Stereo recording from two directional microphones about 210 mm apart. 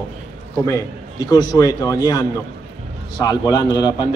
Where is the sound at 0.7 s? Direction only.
15° left (ahead or behind).